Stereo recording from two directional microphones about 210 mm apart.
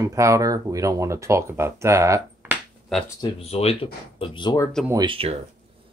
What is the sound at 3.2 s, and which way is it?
Speech, 30° left (ahead or behind).